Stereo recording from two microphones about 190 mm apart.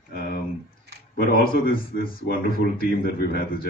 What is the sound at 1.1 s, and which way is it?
Speech, 50° left (ahead or behind).